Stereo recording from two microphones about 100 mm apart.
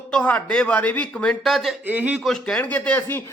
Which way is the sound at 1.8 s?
15° right (ahead or behind).